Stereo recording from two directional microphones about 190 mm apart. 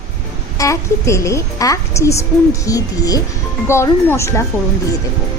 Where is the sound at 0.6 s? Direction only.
15° left (ahead or behind).